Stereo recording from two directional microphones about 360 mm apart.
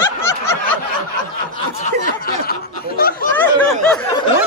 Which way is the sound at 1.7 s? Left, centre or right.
Left.